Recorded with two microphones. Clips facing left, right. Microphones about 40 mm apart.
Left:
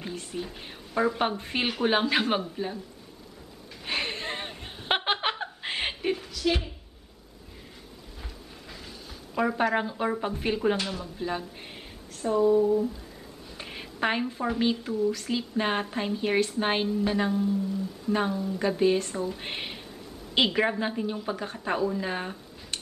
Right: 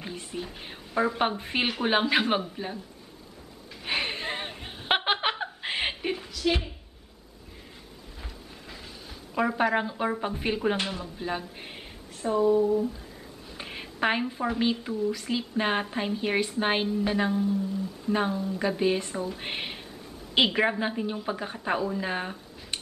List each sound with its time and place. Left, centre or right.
0.0 s a woman's voice: centre
3.8 s chuckle: centre
8.2 s a sound: centre
10.4 s a woman's voice: centre
18.1 s speech: right
18.4 s a woman's voice: centre